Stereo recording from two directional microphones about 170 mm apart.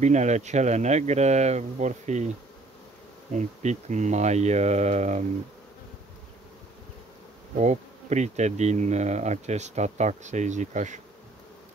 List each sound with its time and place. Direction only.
0.0 s bee: 45° right (ahead or behind)
3.3 s bee: 45° right (ahead or behind)
7.5 s bee: 45° right (ahead or behind)